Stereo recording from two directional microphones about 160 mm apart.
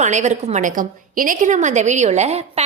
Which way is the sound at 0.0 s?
45° right (ahead or behind).